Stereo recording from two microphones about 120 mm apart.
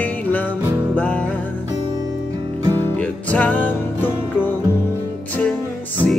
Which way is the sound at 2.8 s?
15° left (ahead or behind).